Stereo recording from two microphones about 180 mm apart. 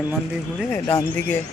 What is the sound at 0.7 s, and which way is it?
Speech, 15° left (ahead or behind).